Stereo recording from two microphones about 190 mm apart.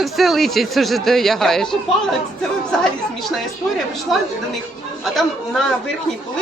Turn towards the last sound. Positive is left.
turn(degrees=0)  # may be behind; listen again after turning